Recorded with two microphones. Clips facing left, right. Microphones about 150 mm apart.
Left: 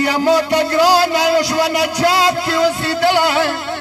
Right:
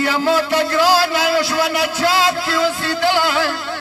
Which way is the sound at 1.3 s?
20° left (ahead or behind).